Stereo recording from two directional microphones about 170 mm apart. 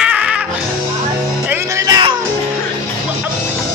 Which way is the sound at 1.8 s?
20° right (ahead or behind).